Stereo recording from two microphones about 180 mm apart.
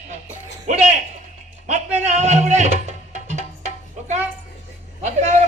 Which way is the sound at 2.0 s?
40° right (ahead or behind).